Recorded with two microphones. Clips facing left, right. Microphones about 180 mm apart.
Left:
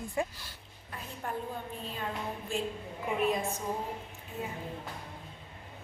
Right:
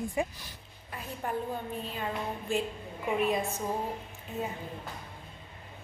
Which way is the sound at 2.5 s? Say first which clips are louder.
Right 4 dB; centre (ahead or behind).